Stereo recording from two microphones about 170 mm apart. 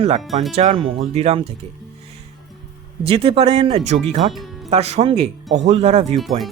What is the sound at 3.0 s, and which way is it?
Speech, 35° right (ahead or behind).